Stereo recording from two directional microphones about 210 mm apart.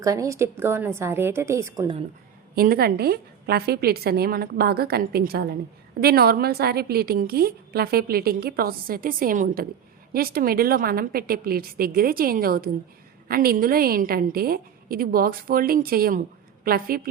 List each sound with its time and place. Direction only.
0.0 s a woman's voice: 15° right (ahead or behind)
2.6 s a woman's voice: 45° right (ahead or behind)